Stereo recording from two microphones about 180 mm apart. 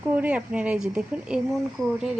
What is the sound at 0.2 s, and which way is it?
Speech, 5° right (ahead or behind).